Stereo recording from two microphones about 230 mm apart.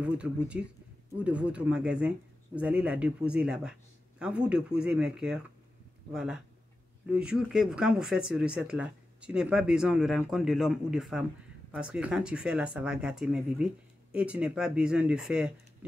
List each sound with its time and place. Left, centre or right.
0.0 s speech: centre